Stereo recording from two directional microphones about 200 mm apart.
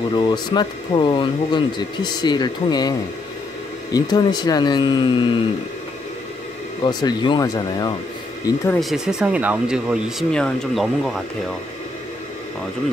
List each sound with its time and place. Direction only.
0.1 s speech: 20° left (ahead or behind)
6.8 s speech: 20° left (ahead or behind)
8.7 s speech: centre (ahead or behind)